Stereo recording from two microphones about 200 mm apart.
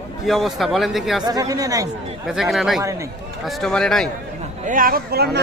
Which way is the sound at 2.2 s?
Centre (ahead or behind).